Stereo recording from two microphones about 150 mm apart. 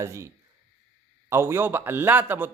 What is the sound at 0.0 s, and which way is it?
Speech, 20° right (ahead or behind).